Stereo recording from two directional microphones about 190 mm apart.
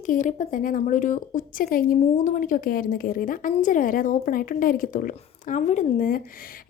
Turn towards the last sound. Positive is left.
turn(degrees=45)  # may be behind; listen again after turning